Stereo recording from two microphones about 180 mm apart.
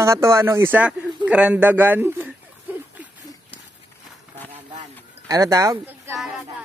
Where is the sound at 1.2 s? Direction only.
5° right (ahead or behind).